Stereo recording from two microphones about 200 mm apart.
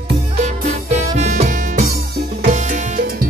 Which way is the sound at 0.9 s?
35° right (ahead or behind).